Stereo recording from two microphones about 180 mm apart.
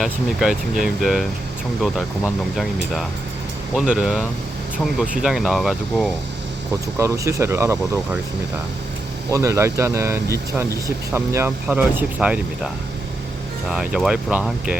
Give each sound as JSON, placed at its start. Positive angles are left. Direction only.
{"t": 0.0, "sound": "speech", "side_deg": 0}
{"t": 5.2, "sound": "speech", "side_deg": 0}
{"t": 7.0, "sound": "speech", "side_deg": -15}
{"t": 9.3, "sound": "speech", "side_deg": -15}